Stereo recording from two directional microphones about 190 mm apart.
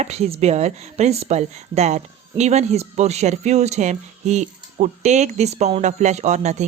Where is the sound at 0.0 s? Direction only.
35° right (ahead or behind).